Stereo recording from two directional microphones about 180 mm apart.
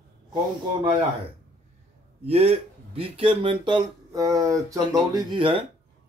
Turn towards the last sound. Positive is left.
turn(degrees=-30)  # may be behind; listen again after turning